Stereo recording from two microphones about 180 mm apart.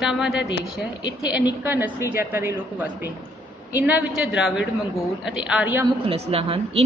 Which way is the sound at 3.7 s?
10° right (ahead or behind).